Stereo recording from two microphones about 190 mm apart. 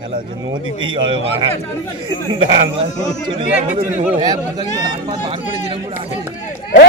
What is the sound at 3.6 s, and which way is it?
Speech, 40° right (ahead or behind).